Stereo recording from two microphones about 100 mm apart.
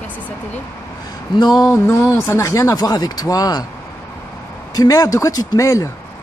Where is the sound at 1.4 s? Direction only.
45° left (ahead or behind).